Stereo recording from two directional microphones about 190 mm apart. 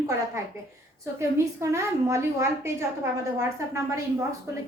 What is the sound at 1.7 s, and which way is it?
A woman's voice, 15° right (ahead or behind).